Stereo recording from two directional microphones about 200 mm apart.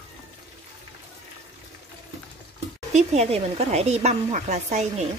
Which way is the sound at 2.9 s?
30° right (ahead or behind).